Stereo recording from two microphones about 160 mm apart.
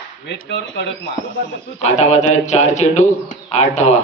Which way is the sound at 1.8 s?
45° left (ahead or behind).